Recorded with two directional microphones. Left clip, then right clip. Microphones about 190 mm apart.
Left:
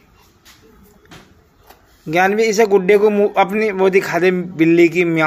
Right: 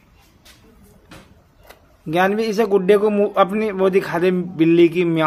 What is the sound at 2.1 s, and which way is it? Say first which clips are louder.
A man's voice: left 4 dB; 5° right (ahead or behind).